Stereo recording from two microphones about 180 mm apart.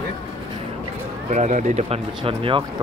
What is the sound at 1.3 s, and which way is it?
Speech, 40° right (ahead or behind).